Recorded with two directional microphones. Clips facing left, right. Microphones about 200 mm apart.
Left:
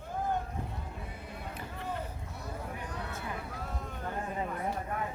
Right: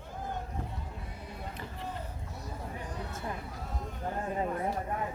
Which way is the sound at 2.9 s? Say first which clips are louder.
Even; 65° left (ahead or behind).